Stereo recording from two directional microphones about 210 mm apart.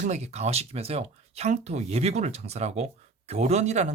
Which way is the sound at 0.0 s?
30° right (ahead or behind).